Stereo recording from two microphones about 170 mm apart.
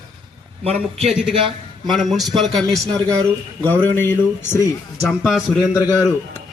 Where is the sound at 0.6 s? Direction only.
35° right (ahead or behind).